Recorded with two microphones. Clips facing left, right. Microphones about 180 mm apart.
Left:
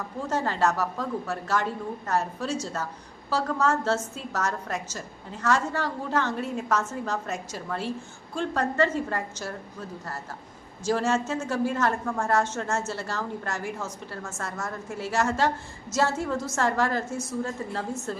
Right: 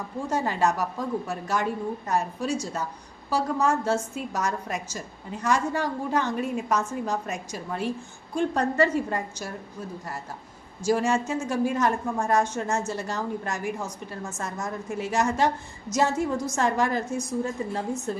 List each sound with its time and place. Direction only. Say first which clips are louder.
0.3 s a woman's voice: right 1 dB; 15° right (ahead or behind)
10.8 s a woman's voice: right 1 dB; 15° right (ahead or behind)